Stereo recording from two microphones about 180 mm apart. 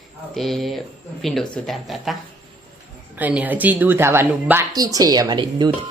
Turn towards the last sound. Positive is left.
turn(degrees=-25)  # may be behind; listen again after turning